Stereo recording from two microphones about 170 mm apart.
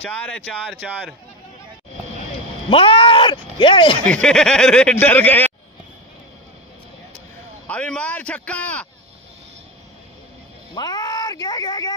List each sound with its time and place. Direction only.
0.0 s speech: 10° left (ahead or behind)
2.7 s speech: 30° left (ahead or behind)
4.0 s speech: 5° left (ahead or behind)
7.6 s speech: 5° left (ahead or behind)
10.7 s a sound: 25° left (ahead or behind)